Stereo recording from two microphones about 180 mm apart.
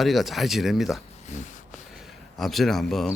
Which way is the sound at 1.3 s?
40° left (ahead or behind).